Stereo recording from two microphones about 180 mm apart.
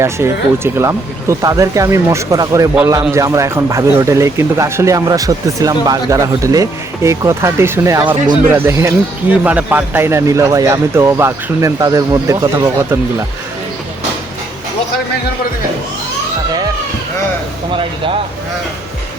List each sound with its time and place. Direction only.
0.0 s speech: 15° right (ahead or behind)
17.7 s speech: 30° right (ahead or behind)